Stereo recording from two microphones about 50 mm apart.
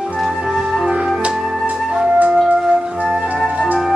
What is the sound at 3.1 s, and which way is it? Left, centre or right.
Music, centre.